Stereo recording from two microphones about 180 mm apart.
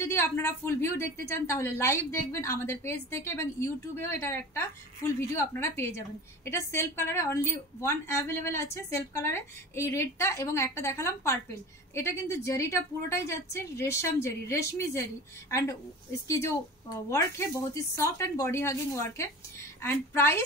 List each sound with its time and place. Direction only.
0.0 s a woman's voice: 15° left (ahead or behind)
16.3 s a woman's voice: 15° left (ahead or behind)
17.7 s a woman's voice: 15° left (ahead or behind)